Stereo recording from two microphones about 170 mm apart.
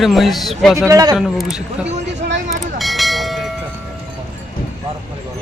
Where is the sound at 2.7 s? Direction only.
Centre (ahead or behind).